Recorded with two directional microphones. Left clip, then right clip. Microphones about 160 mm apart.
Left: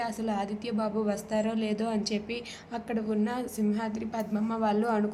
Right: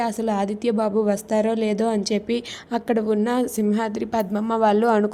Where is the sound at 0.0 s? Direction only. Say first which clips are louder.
Right 9 dB; 50° right (ahead or behind).